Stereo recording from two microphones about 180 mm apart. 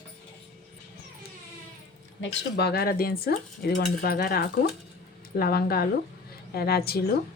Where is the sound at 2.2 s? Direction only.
70° left (ahead or behind).